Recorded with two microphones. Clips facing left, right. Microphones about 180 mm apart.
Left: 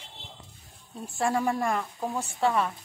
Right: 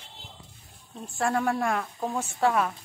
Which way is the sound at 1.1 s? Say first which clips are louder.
Even; centre (ahead or behind).